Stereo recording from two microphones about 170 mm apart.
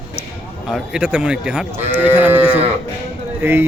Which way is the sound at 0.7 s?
5° right (ahead or behind).